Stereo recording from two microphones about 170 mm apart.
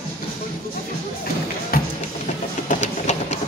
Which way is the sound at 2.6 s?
45° left (ahead or behind).